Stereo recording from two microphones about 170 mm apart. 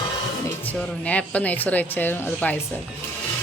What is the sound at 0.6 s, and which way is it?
Speech, 10° left (ahead or behind).